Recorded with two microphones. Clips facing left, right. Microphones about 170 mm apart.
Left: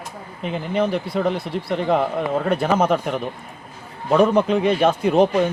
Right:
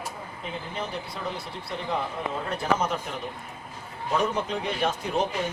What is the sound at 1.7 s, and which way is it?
Speech, 75° left (ahead or behind).